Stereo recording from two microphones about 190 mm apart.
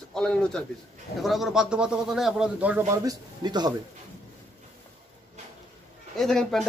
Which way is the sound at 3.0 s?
20° right (ahead or behind).